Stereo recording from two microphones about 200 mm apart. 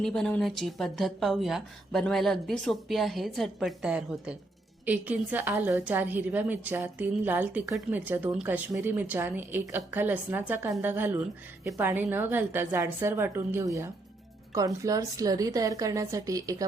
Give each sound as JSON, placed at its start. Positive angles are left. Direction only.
{"t": 0.0, "sound": "a woman's voice", "side_deg": 5}